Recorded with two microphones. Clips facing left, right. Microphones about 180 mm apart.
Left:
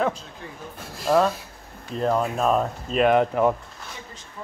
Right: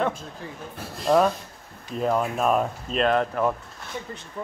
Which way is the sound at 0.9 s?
Centre (ahead or behind).